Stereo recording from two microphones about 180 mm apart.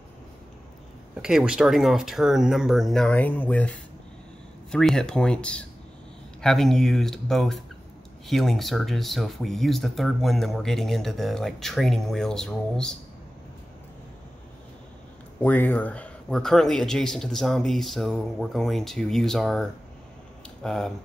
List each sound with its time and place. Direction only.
1.1 s speech: 5° right (ahead or behind)
15.4 s speech: 10° left (ahead or behind)